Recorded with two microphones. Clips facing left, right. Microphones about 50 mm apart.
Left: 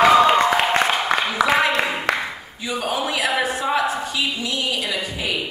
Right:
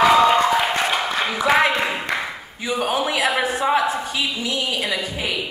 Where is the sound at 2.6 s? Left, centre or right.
Right.